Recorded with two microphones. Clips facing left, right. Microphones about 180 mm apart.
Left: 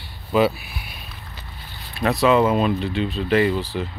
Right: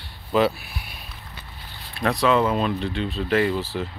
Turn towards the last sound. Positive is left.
turn(degrees=0)  # may be behind; listen again after turning